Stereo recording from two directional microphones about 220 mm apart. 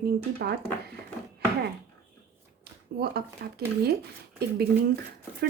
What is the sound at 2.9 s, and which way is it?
A woman's voice, 45° right (ahead or behind).